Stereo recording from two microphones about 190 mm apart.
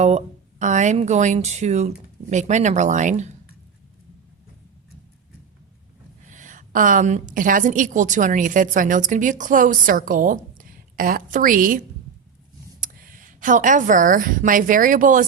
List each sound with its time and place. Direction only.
0.6 s speech: 40° right (ahead or behind)
6.3 s a woman's voice: 40° right (ahead or behind)
12.8 s a woman's voice: 45° right (ahead or behind)